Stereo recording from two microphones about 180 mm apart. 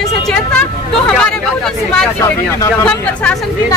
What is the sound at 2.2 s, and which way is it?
A woman's voice, 15° left (ahead or behind).